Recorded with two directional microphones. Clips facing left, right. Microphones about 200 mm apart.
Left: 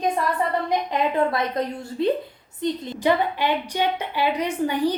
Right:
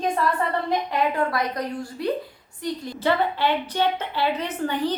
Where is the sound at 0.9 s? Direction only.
20° left (ahead or behind).